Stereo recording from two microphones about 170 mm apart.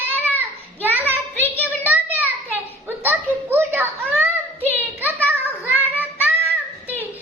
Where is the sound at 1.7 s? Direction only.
10° right (ahead or behind).